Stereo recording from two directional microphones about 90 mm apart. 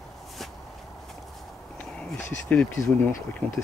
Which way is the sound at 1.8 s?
10° left (ahead or behind).